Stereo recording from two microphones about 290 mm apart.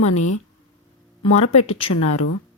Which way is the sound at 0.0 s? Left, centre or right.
Left.